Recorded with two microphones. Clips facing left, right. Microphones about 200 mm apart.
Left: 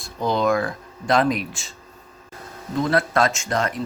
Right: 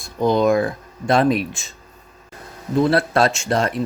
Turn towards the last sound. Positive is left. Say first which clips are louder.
# right 3 dB
turn(degrees=-30)  # may be behind; listen again after turning